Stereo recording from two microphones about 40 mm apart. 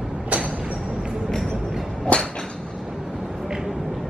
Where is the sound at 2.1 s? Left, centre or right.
Left.